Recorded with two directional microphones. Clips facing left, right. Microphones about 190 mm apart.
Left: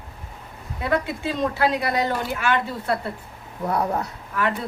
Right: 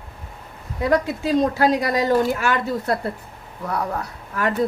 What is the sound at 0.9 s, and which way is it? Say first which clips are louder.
A woman's voice: right 5 dB; 40° right (ahead or behind).